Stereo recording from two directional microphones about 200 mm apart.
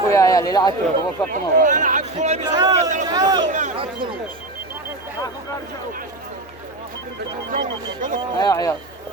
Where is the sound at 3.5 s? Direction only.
35° right (ahead or behind).